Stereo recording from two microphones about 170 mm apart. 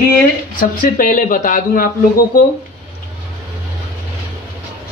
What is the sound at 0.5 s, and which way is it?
Speech, 55° left (ahead or behind).